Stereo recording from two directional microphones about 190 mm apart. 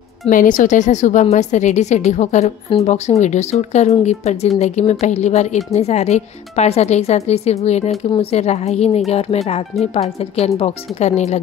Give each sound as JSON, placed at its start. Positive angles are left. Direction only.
{"t": 0.3, "sound": "a woman's voice", "side_deg": 45}